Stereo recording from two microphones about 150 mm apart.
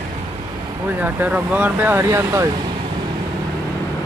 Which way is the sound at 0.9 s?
10° right (ahead or behind).